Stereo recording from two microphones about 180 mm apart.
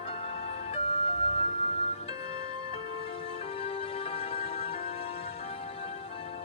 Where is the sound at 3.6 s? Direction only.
30° left (ahead or behind).